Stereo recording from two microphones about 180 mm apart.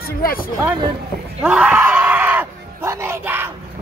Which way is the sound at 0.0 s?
55° left (ahead or behind).